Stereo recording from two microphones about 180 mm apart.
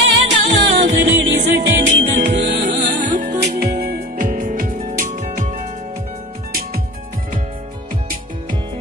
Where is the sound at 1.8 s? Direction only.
90° right; by 2.9 s 75° right (ahead or behind).